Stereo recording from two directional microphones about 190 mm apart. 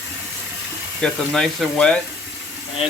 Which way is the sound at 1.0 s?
Centre (ahead or behind).